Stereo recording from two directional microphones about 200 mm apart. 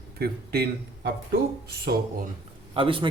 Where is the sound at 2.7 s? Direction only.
25° right (ahead or behind).